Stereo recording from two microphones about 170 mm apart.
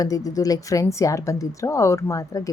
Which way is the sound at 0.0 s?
20° left (ahead or behind).